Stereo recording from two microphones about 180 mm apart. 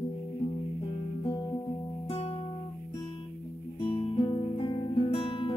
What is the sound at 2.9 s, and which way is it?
Guitar, 25° left (ahead or behind).